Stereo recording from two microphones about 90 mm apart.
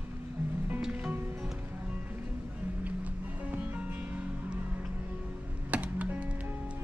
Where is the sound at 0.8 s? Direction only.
15° right (ahead or behind).